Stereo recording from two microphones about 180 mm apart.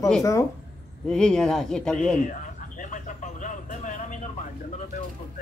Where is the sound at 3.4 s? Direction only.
45° left (ahead or behind).